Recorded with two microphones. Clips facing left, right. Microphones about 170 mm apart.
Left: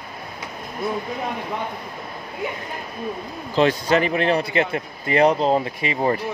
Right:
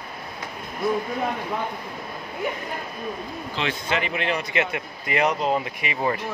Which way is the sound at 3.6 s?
40° left (ahead or behind).